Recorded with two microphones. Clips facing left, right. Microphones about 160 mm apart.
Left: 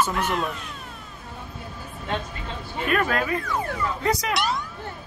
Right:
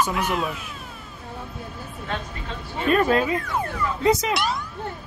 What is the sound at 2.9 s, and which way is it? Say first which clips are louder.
Speech: right 4 dB; 30° right (ahead or behind).